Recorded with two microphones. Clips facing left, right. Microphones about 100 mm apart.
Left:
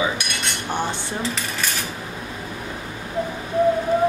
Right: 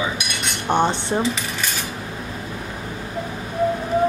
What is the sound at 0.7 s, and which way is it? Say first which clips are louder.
Speech: right 7 dB; 20° right (ahead or behind).